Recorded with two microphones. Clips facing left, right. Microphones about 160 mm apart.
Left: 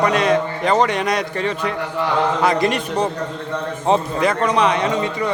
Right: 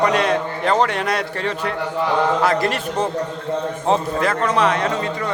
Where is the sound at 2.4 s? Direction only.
5° right (ahead or behind).